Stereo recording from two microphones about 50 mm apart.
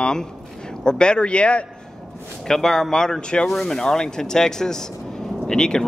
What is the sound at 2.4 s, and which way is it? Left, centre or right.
Speech, centre.